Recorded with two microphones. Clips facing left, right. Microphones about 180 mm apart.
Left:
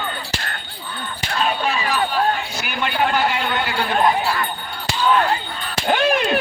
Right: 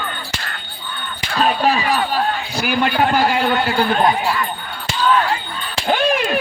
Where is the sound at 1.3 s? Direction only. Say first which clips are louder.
Right 5 dB; 40° right (ahead or behind).